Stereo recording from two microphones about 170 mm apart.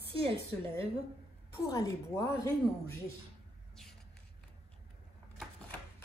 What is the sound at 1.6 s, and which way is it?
Speech, 20° left (ahead or behind).